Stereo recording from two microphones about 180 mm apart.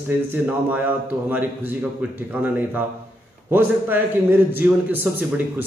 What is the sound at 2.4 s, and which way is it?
A man's voice, 10° right (ahead or behind).